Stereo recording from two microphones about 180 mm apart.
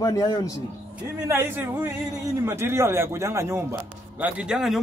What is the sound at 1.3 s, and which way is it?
A man's voice, 15° right (ahead or behind).